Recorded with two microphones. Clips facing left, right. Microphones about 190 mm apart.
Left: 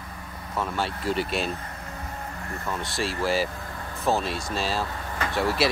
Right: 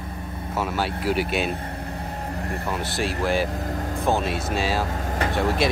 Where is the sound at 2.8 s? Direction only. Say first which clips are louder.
Right 1 dB; centre (ahead or behind).